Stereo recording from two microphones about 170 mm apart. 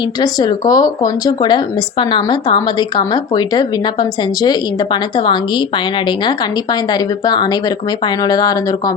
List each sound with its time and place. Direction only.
0.2 s speech: 25° left (ahead or behind)
6.9 s speech: 25° left (ahead or behind)